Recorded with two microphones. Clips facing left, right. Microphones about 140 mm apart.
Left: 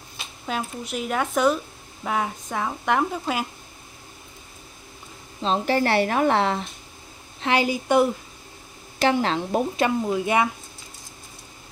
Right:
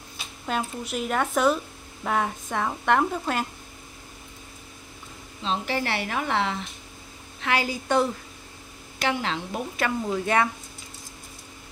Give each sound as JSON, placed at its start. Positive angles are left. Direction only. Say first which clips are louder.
{"t": 0.5, "sound": "speech", "louder": "even", "side_deg": 0}
{"t": 5.4, "sound": "a woman's voice", "louder": "left 6 dB", "side_deg": 40}
{"t": 7.3, "sound": "a woman's voice", "louder": "left 4 dB", "side_deg": 25}
{"t": 9.0, "sound": "a woman's voice", "louder": "left 6 dB", "side_deg": 40}
{"t": 9.8, "sound": "a woman's voice", "louder": "left 4 dB", "side_deg": 20}